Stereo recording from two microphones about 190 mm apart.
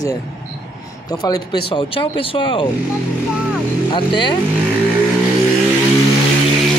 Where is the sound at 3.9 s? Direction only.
25° left (ahead or behind).